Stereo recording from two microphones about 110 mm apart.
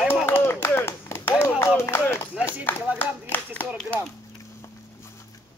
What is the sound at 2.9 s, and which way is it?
Speech, 15° right (ahead or behind).